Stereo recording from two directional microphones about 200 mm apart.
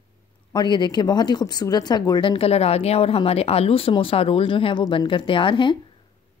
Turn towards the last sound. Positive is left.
turn(degrees=25)  # may be behind; listen again after turning